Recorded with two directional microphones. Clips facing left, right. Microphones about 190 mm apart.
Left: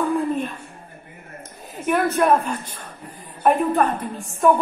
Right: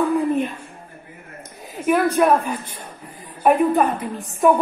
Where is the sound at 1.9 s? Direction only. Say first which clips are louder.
Right 2 dB; centre (ahead or behind).